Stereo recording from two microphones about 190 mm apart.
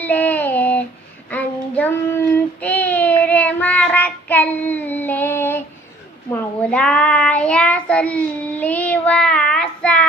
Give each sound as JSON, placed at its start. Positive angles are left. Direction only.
{"t": 0.0, "sound": "child singing", "side_deg": 10}